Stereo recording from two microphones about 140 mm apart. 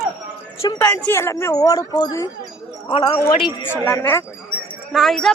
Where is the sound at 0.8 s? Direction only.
10° left (ahead or behind).